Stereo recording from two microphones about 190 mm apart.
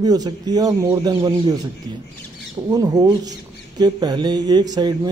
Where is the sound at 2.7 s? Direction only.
20° right (ahead or behind).